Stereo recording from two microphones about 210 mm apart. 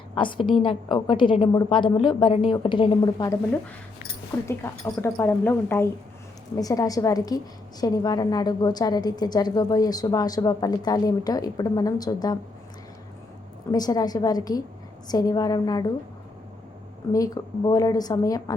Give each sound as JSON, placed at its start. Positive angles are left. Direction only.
{"t": 0.1, "sound": "a woman's voice", "side_deg": 25}
{"t": 4.4, "sound": "a woman's voice", "side_deg": 10}
{"t": 13.7, "sound": "a woman's voice", "side_deg": 20}
{"t": 17.1, "sound": "a woman's voice", "side_deg": 15}